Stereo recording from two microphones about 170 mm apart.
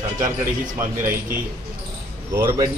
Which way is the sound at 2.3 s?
15° right (ahead or behind).